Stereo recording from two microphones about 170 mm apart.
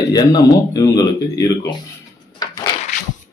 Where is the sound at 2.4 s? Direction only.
25° left (ahead or behind).